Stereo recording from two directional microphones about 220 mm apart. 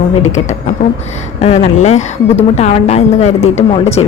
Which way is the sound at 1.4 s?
30° left (ahead or behind).